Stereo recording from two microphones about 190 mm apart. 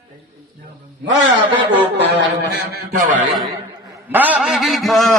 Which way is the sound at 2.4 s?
60° right (ahead or behind).